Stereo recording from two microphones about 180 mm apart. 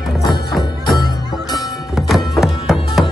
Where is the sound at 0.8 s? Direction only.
25° left (ahead or behind).